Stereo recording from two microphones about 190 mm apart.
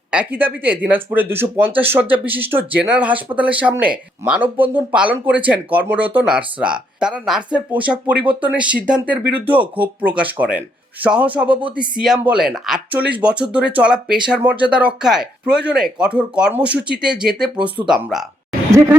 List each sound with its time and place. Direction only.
0.1 s speech: 10° right (ahead or behind)